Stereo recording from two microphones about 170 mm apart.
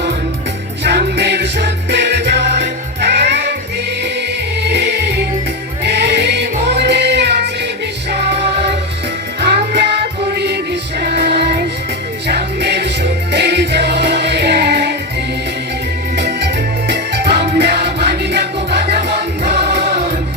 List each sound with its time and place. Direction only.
0.9 s music: 80° right
4.6 s music: 85° right
16.1 s music: 80° right